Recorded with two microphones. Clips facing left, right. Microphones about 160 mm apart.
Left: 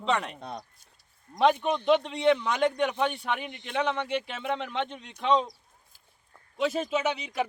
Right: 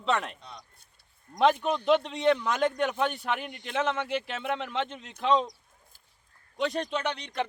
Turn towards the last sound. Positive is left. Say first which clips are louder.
# left 3 dB
turn(degrees=5)  # may be behind; listen again after turning